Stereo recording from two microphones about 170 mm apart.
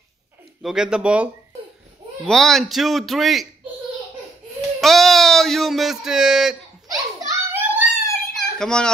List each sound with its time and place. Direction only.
0.6 s speech: 5° right (ahead or behind)
4.7 s speech: centre (ahead or behind)
6.9 s a sound: 20° right (ahead or behind)
8.4 s children playing: 5° left (ahead or behind)